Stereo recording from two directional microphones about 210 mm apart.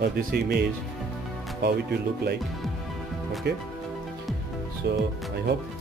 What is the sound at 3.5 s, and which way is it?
Speech, 55° right (ahead or behind).